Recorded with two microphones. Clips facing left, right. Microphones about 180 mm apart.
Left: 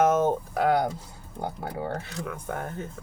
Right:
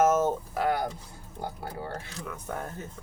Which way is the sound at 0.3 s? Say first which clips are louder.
Left 4 dB; 75° left (ahead or behind).